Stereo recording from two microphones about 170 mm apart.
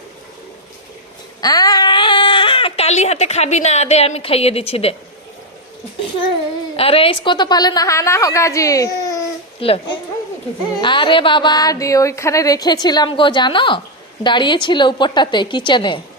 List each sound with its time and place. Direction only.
1.4 s speech: 20° left (ahead or behind)
6.7 s a woman's voice: 35° left (ahead or behind); by 9.2 s 20° left (ahead or behind)
9.6 s a woman's voice: 35° left (ahead or behind)